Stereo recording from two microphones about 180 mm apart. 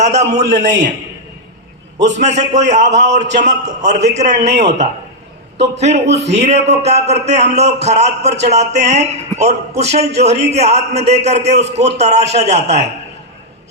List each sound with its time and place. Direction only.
0.0 s a man's voice: 40° right (ahead or behind)
2.0 s a man's voice: 40° right (ahead or behind)
5.5 s a man's voice: 70° right (ahead or behind)
5.8 s a man's voice: 35° right (ahead or behind)